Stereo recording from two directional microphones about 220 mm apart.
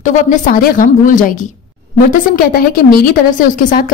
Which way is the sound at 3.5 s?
35° left (ahead or behind).